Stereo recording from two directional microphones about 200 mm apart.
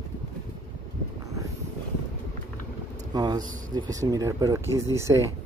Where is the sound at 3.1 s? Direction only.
20° right (ahead or behind).